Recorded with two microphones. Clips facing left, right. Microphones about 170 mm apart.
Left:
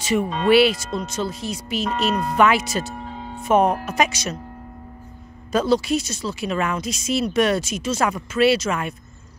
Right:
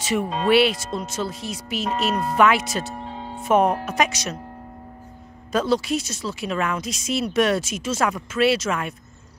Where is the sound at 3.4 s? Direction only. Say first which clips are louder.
Left 1 dB; centre (ahead or behind).